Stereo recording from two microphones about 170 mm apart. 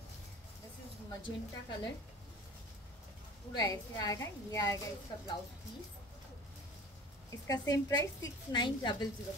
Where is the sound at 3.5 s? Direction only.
20° left (ahead or behind).